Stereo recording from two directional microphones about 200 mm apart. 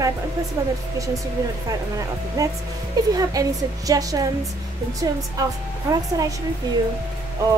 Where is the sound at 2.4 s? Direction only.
15° right (ahead or behind).